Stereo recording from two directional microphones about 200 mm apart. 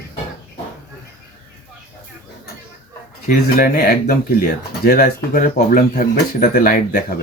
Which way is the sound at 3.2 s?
45° left (ahead or behind).